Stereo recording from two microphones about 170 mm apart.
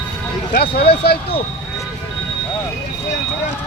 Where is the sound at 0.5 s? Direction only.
75° left (ahead or behind).